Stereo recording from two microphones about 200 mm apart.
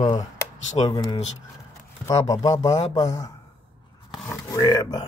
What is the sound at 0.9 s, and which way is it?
A man's voice, 20° left (ahead or behind).